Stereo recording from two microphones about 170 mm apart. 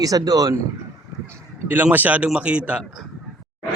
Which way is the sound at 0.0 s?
20° right (ahead or behind).